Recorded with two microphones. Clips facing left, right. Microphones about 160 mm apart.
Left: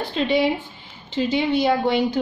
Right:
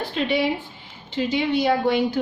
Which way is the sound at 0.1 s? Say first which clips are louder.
Left 3 dB; 25° left (ahead or behind).